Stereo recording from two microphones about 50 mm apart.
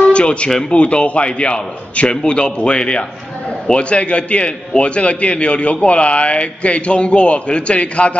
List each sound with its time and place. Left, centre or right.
0.0 s music: left
0.5 s speech: centre
0.7 s a man's voice: left